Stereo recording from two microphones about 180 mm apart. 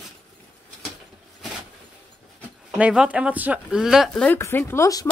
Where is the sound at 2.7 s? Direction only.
5° right (ahead or behind).